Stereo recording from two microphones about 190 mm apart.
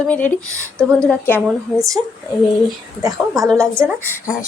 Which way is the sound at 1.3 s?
15° right (ahead or behind).